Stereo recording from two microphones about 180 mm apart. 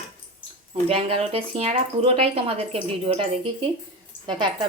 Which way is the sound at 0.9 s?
35° right (ahead or behind).